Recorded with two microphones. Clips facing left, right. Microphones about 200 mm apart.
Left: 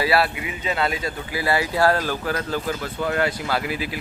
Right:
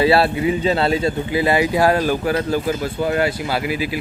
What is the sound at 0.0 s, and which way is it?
Speech, 25° right (ahead or behind).